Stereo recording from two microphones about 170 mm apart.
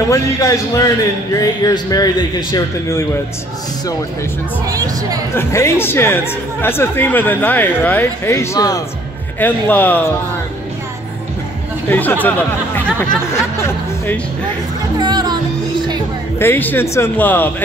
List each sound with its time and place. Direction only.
0.1 s a man's voice: 20° left (ahead or behind)
4.6 s speech: 20° right (ahead or behind)
5.3 s speech: 15° left (ahead or behind)
9.4 s speech: 10° left (ahead or behind)
11.9 s speech: 10° left (ahead or behind)
15.0 s music: 25° right (ahead or behind)
16.3 s speech: 10° left (ahead or behind)